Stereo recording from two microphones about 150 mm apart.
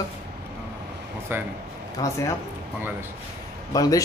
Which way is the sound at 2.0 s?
25° left (ahead or behind).